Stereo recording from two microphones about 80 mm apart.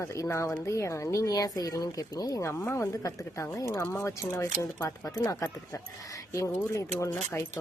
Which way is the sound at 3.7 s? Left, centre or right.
Left.